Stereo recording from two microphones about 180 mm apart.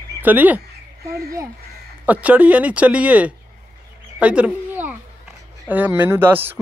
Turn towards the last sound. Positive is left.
turn(degrees=-10)  # may be behind; listen again after turning